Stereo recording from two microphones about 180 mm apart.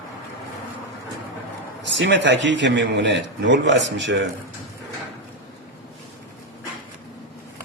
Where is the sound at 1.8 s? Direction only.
90° right.